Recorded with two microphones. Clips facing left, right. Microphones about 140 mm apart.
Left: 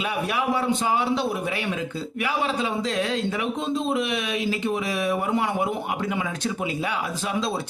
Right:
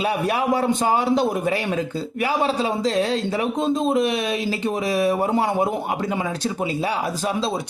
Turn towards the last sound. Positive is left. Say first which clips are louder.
# right 3 dB
turn(degrees=-35)  # may be behind; listen again after turning